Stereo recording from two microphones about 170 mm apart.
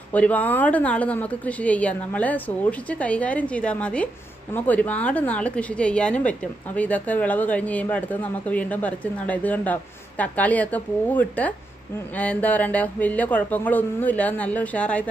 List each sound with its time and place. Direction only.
0.1 s speech: 10° left (ahead or behind)